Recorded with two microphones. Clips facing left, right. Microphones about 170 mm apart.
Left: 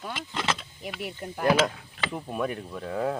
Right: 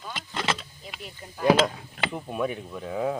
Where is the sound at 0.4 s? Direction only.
5° right (ahead or behind).